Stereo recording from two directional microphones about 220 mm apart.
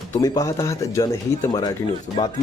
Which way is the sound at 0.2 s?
15° left (ahead or behind).